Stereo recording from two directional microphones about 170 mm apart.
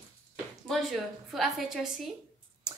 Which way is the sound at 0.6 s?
Centre (ahead or behind).